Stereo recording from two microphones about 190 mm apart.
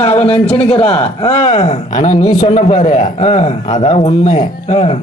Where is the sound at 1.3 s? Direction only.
35° left (ahead or behind).